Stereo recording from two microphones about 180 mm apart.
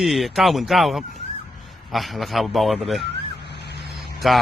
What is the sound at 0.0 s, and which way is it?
Speech, centre (ahead or behind).